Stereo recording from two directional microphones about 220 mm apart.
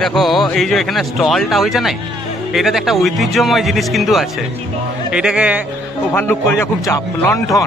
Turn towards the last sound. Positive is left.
turn(degrees=15)  # may be behind; listen again after turning